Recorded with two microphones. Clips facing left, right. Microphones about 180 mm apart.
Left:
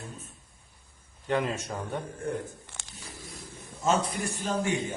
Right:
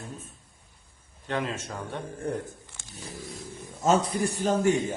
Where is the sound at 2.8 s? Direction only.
75° left (ahead or behind).